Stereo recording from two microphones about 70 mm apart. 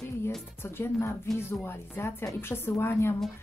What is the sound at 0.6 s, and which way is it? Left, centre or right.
Speech, left.